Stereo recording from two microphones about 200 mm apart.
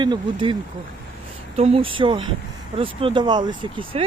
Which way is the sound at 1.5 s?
30° right (ahead or behind).